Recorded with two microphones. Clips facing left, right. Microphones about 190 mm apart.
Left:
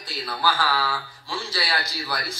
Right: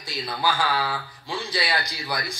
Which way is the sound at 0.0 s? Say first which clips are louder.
Even; 15° right (ahead or behind).